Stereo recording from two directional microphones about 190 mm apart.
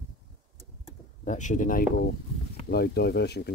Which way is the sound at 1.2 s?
40° left (ahead or behind).